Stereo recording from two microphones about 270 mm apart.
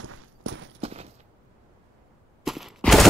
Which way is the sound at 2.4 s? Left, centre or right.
Centre.